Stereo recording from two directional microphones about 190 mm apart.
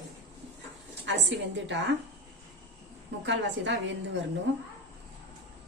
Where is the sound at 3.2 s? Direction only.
70° right (ahead or behind).